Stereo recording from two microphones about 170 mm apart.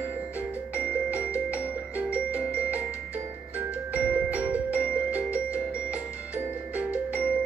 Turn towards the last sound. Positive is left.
turn(degrees=-10)  # may be behind; listen again after turning